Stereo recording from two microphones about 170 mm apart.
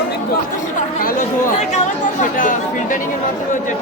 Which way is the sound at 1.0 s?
55° left (ahead or behind).